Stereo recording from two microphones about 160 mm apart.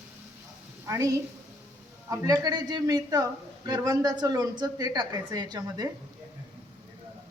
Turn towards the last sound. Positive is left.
turn(degrees=-25)  # may be behind; listen again after turning